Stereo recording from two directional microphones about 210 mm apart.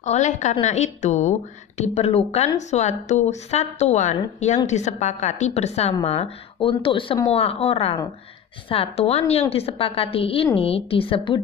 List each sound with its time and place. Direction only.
0.0 s a woman's voice: 35° left (ahead or behind)